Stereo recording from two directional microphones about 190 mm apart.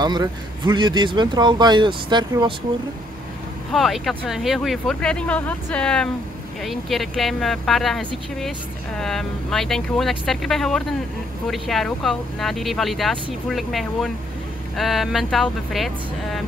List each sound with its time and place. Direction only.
0.0 s speech: 20° right (ahead or behind)
3.7 s speech: centre (ahead or behind)